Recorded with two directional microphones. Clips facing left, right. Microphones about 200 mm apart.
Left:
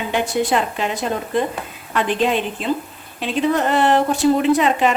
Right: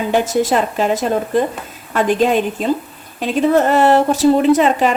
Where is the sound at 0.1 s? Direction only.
40° right (ahead or behind).